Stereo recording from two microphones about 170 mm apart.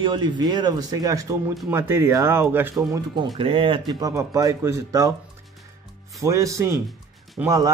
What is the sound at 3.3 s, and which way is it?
Speech, 30° right (ahead or behind).